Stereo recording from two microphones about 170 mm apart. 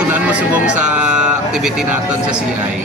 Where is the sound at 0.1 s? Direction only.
10° right (ahead or behind).